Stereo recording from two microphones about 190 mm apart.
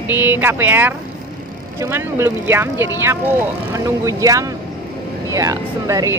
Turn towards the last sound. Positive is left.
turn(degrees=-15)  # may be behind; listen again after turning